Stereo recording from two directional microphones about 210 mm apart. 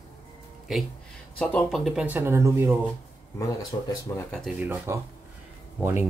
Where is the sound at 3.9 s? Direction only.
15° left (ahead or behind).